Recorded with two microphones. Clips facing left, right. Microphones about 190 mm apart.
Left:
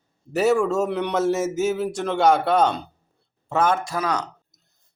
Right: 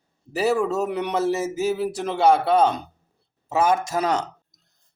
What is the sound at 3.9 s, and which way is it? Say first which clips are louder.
Speech: right 2 dB; 25° right (ahead or behind).